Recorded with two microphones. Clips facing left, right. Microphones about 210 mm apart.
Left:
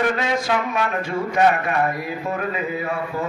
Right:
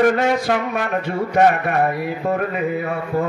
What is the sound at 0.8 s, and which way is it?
A man's voice, 60° right (ahead or behind).